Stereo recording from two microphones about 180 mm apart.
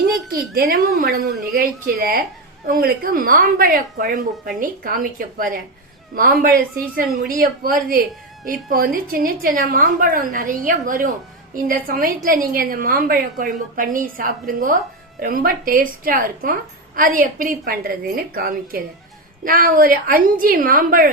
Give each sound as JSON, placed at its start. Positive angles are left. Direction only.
{"t": 0.3, "sound": "a woman's voice", "side_deg": -55}